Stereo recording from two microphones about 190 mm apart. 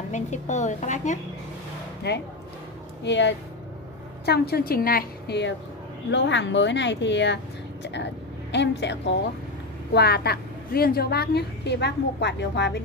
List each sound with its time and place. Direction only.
0.1 s a woman's voice: 40° left (ahead or behind)
2.0 s a woman's voice: 60° left (ahead or behind)
4.3 s a woman's voice: 55° left (ahead or behind)
9.9 s a woman's voice: 55° left (ahead or behind)